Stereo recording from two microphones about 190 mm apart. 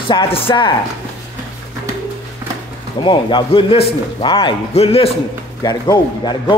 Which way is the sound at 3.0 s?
25° left (ahead or behind).